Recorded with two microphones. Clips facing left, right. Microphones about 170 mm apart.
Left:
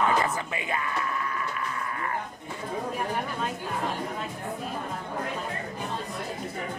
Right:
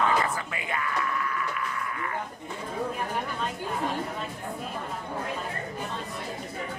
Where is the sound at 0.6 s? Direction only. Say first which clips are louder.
Left 1 dB; 25° left (ahead or behind).